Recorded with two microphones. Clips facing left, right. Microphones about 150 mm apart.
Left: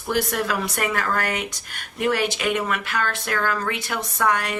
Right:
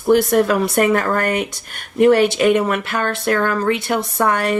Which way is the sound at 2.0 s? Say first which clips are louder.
Right 9 dB; 40° right (ahead or behind).